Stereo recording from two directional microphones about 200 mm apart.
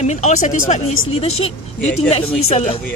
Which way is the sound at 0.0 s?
35° left (ahead or behind).